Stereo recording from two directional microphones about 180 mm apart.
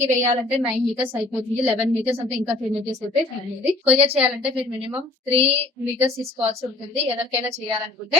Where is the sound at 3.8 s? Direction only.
35° right (ahead or behind).